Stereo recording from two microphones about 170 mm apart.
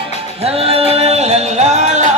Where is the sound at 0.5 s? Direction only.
35° right (ahead or behind).